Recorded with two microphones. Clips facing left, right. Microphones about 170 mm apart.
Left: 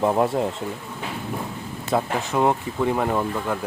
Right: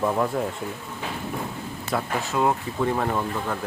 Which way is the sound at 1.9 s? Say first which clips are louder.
Left 3 dB; 20° left (ahead or behind).